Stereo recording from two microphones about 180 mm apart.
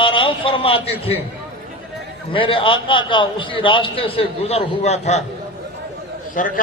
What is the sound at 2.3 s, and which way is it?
A man's voice, 30° left (ahead or behind).